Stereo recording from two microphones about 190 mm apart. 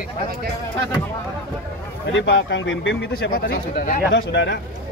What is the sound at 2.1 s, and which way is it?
Speech, 75° left (ahead or behind).